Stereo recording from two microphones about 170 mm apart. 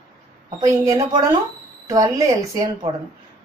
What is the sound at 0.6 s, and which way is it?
Speech, 20° right (ahead or behind).